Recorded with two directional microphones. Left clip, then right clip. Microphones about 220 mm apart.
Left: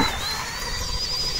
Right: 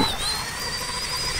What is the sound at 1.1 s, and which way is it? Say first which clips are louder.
Vehicle: left 2 dB; 10° left (ahead or behind).